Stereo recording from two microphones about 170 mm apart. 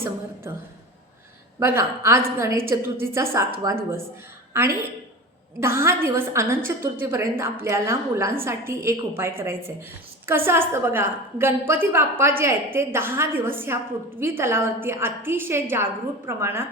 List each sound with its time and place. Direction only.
1.5 s a woman's voice: 15° right (ahead or behind)